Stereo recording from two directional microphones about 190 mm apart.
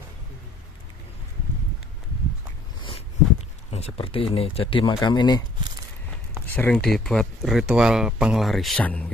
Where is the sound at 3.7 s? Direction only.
35° left (ahead or behind).